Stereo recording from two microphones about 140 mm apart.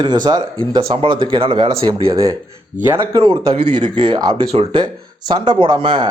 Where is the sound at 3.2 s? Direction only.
40° right (ahead or behind).